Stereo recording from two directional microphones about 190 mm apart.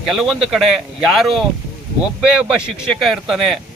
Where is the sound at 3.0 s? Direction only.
Centre (ahead or behind).